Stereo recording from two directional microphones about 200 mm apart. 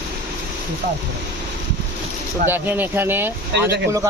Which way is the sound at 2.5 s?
10° right (ahead or behind).